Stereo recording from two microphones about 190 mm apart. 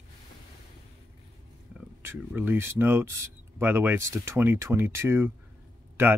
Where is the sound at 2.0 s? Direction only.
10° right (ahead or behind).